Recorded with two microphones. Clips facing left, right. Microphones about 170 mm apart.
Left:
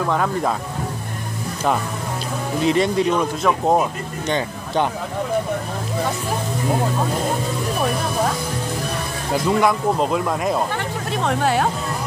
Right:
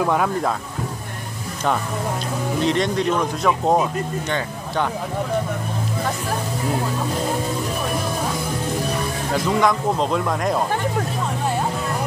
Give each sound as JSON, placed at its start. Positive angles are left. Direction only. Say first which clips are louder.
{"t": 0.0, "sound": "speech", "louder": "right 1 dB", "side_deg": -10}
{"t": 2.6, "sound": "speech", "louder": "left 3 dB", "side_deg": 5}
{"t": 9.3, "sound": "speech", "louder": "left 2 dB", "side_deg": 10}
{"t": 11.2, "sound": "speech", "louder": "left 4 dB", "side_deg": 80}